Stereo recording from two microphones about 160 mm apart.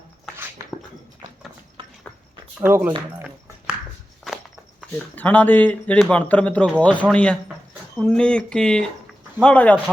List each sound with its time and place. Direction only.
0.6 s dog: 20° right (ahead or behind)
1.8 s horse: 35° right (ahead or behind)
2.6 s speech: 10° right (ahead or behind)
4.3 s walk: centre (ahead or behind)
5.1 s a man's voice: 10° left (ahead or behind)
7.4 s a sound: 10° right (ahead or behind)
8.0 s a man's voice: 5° left (ahead or behind)